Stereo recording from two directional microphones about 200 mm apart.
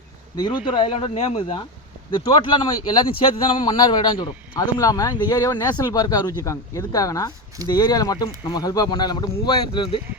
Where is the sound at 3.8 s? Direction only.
20° left (ahead or behind).